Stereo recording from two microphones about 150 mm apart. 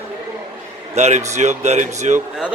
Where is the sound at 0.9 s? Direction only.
50° right (ahead or behind).